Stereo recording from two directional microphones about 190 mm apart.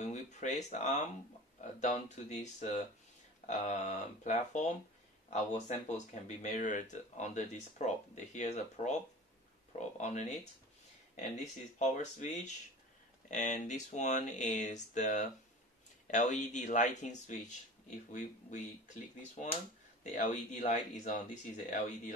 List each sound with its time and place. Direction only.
0.0 s speech: 35° left (ahead or behind)
20.0 s speech: 35° left (ahead or behind)